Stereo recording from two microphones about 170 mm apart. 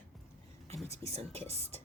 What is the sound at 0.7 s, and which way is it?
Speech, 40° right (ahead or behind).